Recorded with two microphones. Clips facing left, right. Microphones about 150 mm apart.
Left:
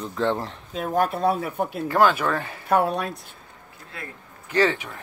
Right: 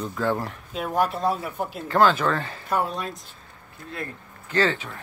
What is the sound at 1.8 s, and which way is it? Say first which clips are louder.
Speech: right 1 dB; 10° left (ahead or behind).